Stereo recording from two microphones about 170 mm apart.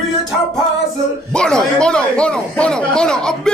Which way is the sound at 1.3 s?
5° left (ahead or behind).